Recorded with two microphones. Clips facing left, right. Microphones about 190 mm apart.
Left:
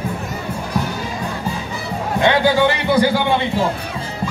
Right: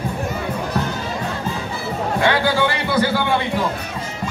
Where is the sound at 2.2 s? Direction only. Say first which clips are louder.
Left 4 dB; 20° left (ahead or behind).